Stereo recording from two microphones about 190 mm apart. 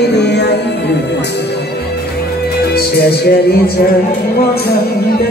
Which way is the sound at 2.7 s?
55° left (ahead or behind).